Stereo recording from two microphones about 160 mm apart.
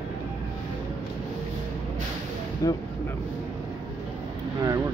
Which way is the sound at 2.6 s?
20° left (ahead or behind).